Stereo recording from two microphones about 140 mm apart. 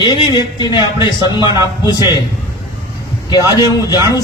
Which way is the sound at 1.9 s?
30° left (ahead or behind).